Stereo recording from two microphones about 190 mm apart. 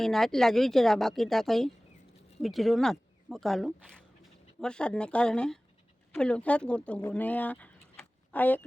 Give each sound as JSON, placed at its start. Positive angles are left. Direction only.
{"t": 0.0, "sound": "speech", "side_deg": 0}